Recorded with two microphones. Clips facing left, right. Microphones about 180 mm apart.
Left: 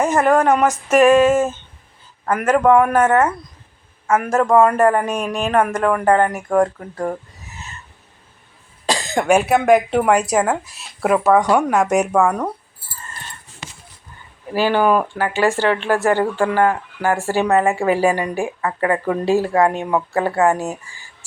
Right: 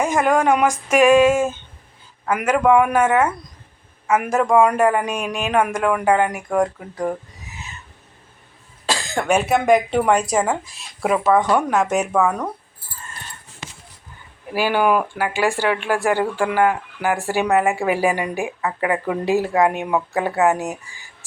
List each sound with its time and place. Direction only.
0.0 s speech: 10° right (ahead or behind)
8.9 s speech: 15° left (ahead or behind)
14.5 s speech: 10° right (ahead or behind)